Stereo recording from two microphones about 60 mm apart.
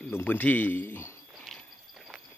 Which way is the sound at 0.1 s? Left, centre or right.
Left.